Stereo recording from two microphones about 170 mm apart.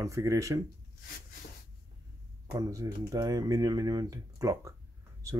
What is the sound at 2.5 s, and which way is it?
Speech, 20° right (ahead or behind).